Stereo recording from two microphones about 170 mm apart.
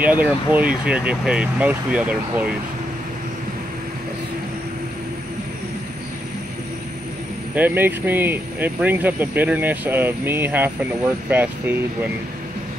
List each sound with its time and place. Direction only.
0.0 s speech: 10° right (ahead or behind)
7.5 s speech: 10° right (ahead or behind)